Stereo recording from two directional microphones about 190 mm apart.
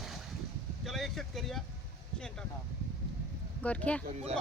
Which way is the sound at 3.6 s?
5° left (ahead or behind).